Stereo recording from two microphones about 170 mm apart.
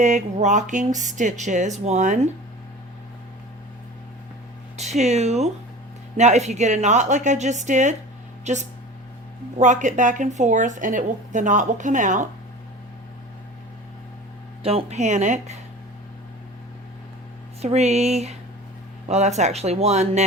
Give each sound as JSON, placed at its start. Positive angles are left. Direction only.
{"t": 0.0, "sound": "a woman's voice", "side_deg": -45}
{"t": 4.8, "sound": "a woman's voice", "side_deg": -40}
{"t": 14.6, "sound": "speech", "side_deg": -35}
{"t": 17.6, "sound": "speech", "side_deg": -40}